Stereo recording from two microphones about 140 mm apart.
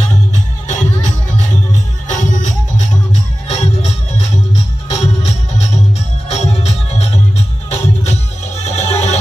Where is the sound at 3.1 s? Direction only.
50° left (ahead or behind).